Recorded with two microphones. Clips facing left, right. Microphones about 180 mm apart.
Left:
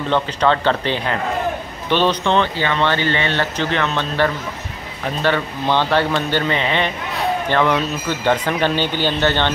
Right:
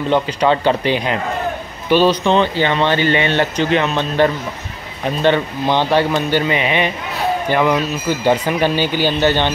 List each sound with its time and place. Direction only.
0.1 s a man's voice: 15° right (ahead or behind)